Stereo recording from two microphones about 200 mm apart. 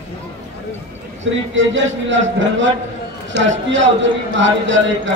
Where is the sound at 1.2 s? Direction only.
70° right (ahead or behind).